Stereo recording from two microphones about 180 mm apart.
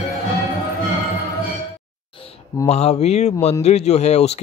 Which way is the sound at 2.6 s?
35° left (ahead or behind).